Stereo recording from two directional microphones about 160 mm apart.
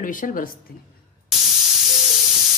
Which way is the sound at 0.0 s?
60° left (ahead or behind).